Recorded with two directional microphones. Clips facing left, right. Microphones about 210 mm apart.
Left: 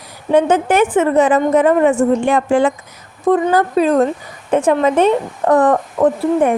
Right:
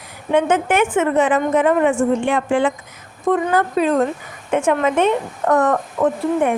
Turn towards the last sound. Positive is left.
turn(degrees=40)  # may be behind; listen again after turning